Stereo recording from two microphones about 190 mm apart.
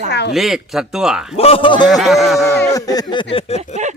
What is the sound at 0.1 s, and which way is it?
Speech, 60° left (ahead or behind).